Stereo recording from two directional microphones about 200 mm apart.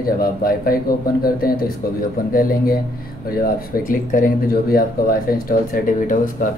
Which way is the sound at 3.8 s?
40° left (ahead or behind).